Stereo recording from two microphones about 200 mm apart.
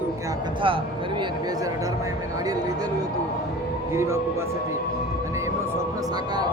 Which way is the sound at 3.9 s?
15° right (ahead or behind).